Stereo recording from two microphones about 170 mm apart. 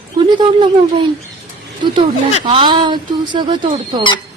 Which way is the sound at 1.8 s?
25° right (ahead or behind).